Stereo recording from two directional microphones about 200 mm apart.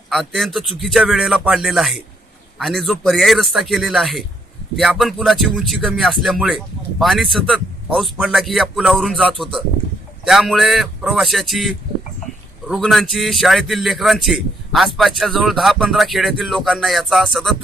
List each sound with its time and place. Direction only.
0.1 s a man's voice: centre (ahead or behind)